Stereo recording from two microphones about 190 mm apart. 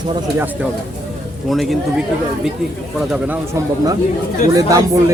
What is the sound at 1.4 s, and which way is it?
Speech, centre (ahead or behind).